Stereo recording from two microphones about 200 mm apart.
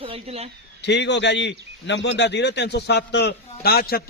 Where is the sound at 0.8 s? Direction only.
60° left (ahead or behind).